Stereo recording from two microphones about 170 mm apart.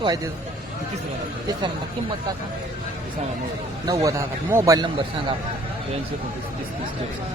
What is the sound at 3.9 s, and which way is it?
A man's voice, 20° right (ahead or behind).